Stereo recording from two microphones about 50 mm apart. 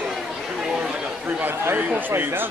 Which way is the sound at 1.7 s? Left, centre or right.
Right.